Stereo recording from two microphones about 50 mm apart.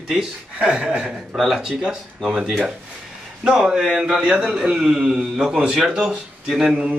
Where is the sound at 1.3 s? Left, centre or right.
Centre.